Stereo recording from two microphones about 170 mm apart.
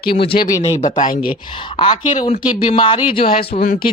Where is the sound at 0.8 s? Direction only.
45° left (ahead or behind).